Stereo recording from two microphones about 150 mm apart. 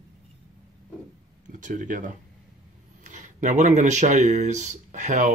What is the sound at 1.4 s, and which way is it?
Speech, 55° right (ahead or behind).